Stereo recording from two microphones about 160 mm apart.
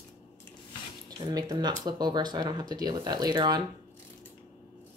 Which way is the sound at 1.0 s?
25° right (ahead or behind).